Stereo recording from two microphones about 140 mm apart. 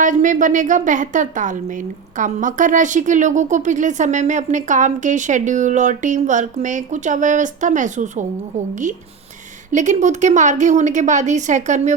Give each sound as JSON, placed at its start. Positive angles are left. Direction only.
{"t": 0.0, "sound": "a woman's voice", "side_deg": -65}
{"t": 9.7, "sound": "a woman's voice", "side_deg": -60}